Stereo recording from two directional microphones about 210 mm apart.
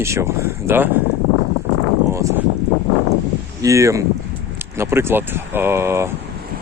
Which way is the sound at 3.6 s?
15° right (ahead or behind).